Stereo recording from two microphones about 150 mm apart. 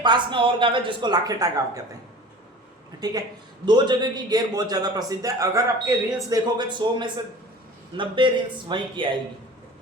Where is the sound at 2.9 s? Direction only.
25° right (ahead or behind).